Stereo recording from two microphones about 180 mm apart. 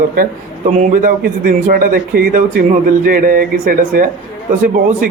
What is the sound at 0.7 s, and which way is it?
A man's voice, 45° right (ahead or behind).